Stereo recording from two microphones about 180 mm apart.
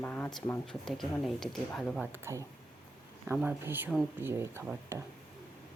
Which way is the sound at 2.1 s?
15° right (ahead or behind).